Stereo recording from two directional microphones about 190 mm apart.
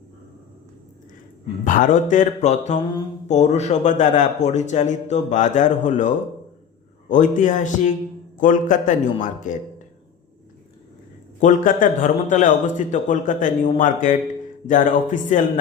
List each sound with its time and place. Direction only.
1.6 s a man's voice: 40° left (ahead or behind)
11.3 s a man's voice: 40° left (ahead or behind)